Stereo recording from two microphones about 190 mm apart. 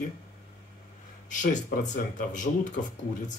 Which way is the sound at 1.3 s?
40° left (ahead or behind).